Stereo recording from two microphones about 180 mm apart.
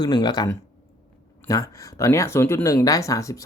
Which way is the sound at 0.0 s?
25° left (ahead or behind).